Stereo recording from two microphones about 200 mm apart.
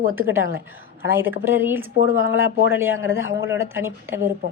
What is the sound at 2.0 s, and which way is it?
Speech, 45° right (ahead or behind).